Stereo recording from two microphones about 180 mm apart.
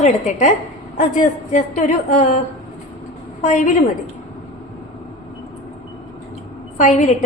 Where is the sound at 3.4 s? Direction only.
40° left (ahead or behind).